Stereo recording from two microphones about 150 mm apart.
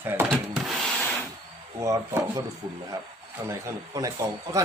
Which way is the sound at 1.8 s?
20° right (ahead or behind).